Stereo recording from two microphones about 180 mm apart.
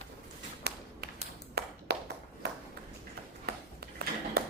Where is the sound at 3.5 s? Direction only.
60° right (ahead or behind).